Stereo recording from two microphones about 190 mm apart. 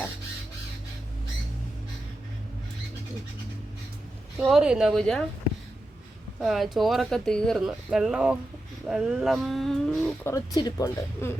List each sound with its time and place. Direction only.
4.4 s speech: 5° right (ahead or behind)
6.4 s speech: centre (ahead or behind)
10.2 s speech: 20° left (ahead or behind)